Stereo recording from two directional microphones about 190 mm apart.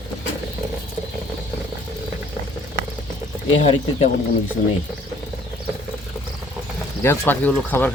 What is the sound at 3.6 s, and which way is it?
Speech, 30° left (ahead or behind).